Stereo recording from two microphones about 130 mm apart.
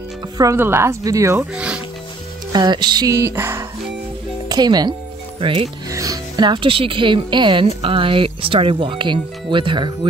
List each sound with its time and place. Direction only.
0.4 s music: 20° right (ahead or behind)
1.5 s speech: 10° right (ahead or behind)
2.5 s music: 35° right (ahead or behind); by 3.6 s 20° right (ahead or behind)
4.5 s speech: 30° right (ahead or behind)
5.4 s speech: 45° right (ahead or behind)
5.9 s speech: 25° right (ahead or behind)